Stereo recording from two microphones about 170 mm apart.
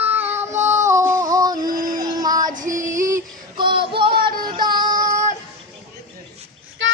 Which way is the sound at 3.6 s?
30° right (ahead or behind).